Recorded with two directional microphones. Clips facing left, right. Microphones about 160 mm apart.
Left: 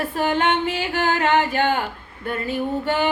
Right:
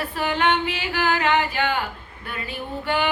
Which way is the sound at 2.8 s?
40° left (ahead or behind).